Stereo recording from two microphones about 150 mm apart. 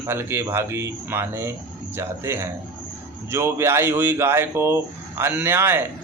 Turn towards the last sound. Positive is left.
turn(degrees=-15)  # may be behind; listen again after turning